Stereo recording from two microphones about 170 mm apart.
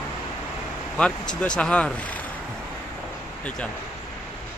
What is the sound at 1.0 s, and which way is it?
Speech, 5° left (ahead or behind).